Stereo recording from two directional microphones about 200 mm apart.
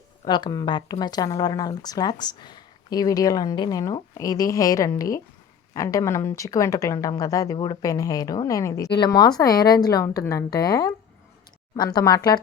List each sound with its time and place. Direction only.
0.3 s a woman's voice: 20° left (ahead or behind)